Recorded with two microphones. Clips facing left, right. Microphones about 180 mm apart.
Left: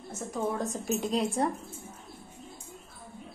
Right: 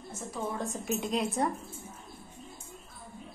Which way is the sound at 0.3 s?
45° left (ahead or behind).